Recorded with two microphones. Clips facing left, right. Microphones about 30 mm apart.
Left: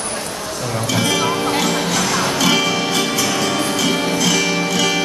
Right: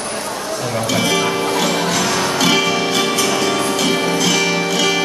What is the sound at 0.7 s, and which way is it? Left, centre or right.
Music, centre.